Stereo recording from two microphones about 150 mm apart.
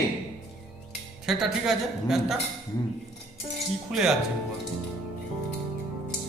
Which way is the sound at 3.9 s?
Centre (ahead or behind).